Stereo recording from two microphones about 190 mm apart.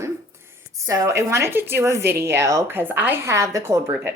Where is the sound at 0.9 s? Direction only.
15° right (ahead or behind).